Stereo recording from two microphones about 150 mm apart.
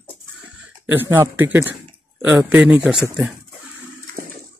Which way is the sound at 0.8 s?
15° right (ahead or behind).